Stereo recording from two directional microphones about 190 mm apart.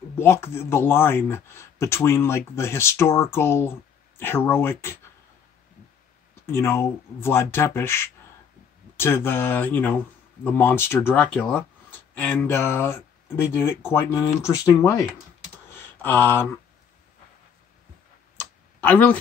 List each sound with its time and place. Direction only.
0.1 s speech: 15° left (ahead or behind)
6.4 s speech: 15° left (ahead or behind)
18.8 s speech: 10° left (ahead or behind)